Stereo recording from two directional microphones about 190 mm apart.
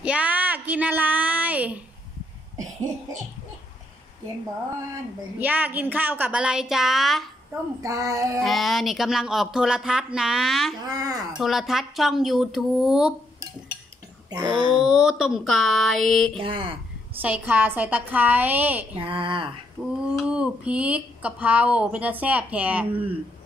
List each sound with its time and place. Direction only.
0.0 s speech: 5° right (ahead or behind)
5.4 s speech: 10° right (ahead or behind)
7.8 s speech: 15° right (ahead or behind)
8.4 s speech: centre (ahead or behind)
10.8 s speech: 20° right (ahead or behind)
11.3 s speech: centre (ahead or behind)
14.3 s speech: 20° right (ahead or behind)
14.8 s speech: 5° right (ahead or behind)
16.3 s speech: 25° right (ahead or behind)
17.2 s speech: 10° right (ahead or behind)
18.9 s speech: 25° right (ahead or behind)
20.1 s speech: 5° right (ahead or behind)